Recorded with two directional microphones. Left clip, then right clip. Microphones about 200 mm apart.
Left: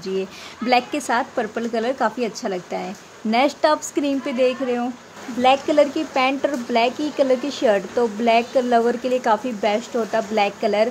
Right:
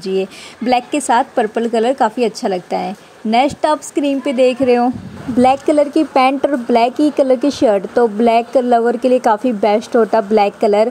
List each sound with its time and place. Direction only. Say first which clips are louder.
0.0 s speech: right 7 dB; 25° right (ahead or behind)